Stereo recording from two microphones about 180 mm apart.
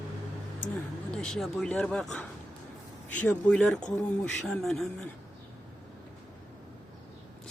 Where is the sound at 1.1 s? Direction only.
5° left (ahead or behind).